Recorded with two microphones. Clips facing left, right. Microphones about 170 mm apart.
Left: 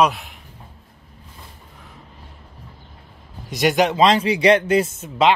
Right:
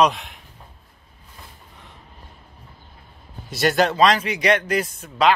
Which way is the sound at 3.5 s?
15° left (ahead or behind).